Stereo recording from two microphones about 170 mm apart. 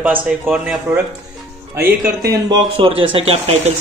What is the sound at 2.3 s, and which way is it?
Speech, 30° right (ahead or behind).